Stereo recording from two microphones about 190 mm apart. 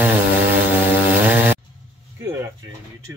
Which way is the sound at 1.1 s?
10° right (ahead or behind).